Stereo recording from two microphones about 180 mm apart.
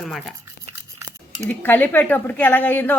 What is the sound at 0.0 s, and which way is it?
Speech, centre (ahead or behind).